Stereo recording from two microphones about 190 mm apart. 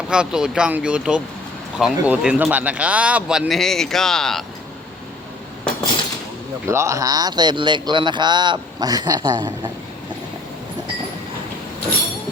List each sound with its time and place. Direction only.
0.1 s speech: 5° right (ahead or behind)
6.7 s speech: 15° right (ahead or behind)